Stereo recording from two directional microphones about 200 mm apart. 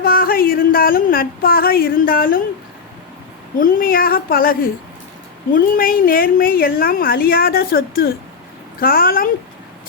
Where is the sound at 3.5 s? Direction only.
45° left (ahead or behind).